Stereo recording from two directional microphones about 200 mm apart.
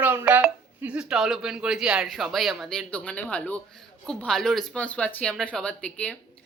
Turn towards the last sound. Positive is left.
turn(degrees=5)  # may be behind; listen again after turning